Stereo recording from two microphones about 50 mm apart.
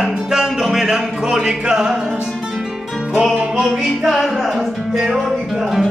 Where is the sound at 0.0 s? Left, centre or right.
Centre.